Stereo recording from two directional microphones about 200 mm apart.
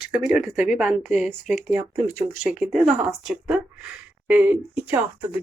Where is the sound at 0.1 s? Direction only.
5° right (ahead or behind).